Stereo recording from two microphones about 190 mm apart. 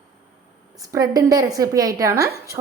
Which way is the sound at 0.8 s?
20° right (ahead or behind).